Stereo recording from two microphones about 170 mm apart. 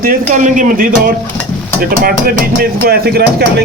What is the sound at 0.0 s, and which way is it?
Speech, 50° right (ahead or behind).